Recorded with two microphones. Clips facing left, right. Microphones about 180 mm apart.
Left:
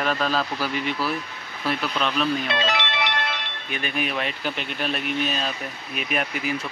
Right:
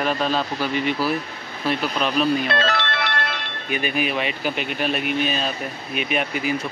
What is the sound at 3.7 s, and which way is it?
Speech, 5° right (ahead or behind).